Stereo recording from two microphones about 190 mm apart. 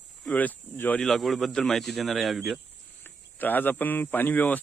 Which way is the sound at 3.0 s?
10° left (ahead or behind).